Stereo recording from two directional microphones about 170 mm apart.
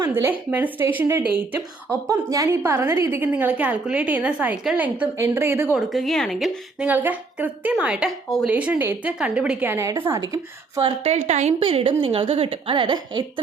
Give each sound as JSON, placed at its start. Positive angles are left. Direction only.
{"t": 0.1, "sound": "speech", "side_deg": -10}
{"t": 5.7, "sound": "speech", "side_deg": 0}
{"t": 11.1, "sound": "a woman's voice", "side_deg": -40}